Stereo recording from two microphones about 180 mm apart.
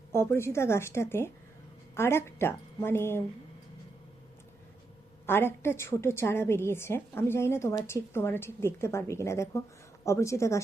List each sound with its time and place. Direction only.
0.1 s a woman's voice: 15° left (ahead or behind)
5.2 s a woman's voice: 15° left (ahead or behind)